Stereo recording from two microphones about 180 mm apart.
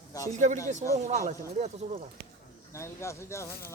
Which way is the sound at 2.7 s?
15° left (ahead or behind).